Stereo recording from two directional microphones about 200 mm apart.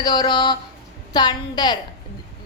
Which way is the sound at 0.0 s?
20° left (ahead or behind).